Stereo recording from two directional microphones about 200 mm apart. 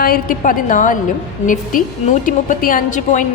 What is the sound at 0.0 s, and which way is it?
A woman's voice, 45° left (ahead or behind).